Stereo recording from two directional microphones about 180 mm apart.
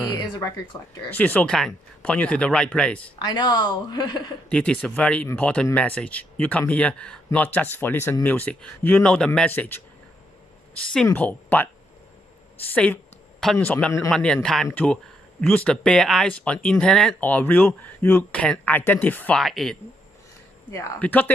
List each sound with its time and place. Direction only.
0.9 s speech: 10° left (ahead or behind)
3.3 s a woman's voice: 20° left (ahead or behind)
4.5 s speech: 5° left (ahead or behind)
11.1 s speech: 10° left (ahead or behind)
12.7 s a woman's voice: 5° left (ahead or behind)